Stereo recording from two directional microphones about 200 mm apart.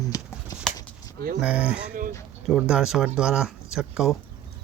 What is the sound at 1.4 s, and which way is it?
Speech, 5° right (ahead or behind).